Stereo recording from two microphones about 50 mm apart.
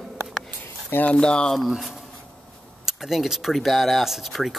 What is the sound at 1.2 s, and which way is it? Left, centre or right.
Speech, centre.